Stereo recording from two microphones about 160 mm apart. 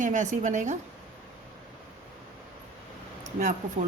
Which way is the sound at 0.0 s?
50° right (ahead or behind).